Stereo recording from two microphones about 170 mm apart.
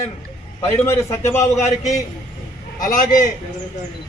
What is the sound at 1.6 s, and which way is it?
A man's voice, 45° left (ahead or behind).